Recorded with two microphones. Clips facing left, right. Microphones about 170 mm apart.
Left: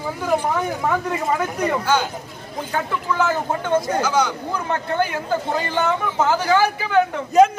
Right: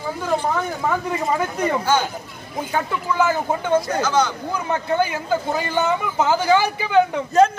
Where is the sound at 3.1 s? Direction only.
10° right (ahead or behind).